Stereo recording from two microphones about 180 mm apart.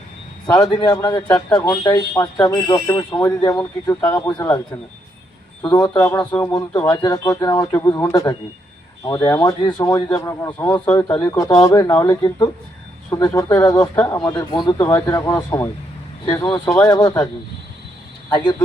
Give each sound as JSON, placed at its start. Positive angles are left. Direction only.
{"t": 0.4, "sound": "speech", "side_deg": 20}
{"t": 5.6, "sound": "speech", "side_deg": 20}
{"t": 14.8, "sound": "speech", "side_deg": 15}
{"t": 18.3, "sound": "speech", "side_deg": 25}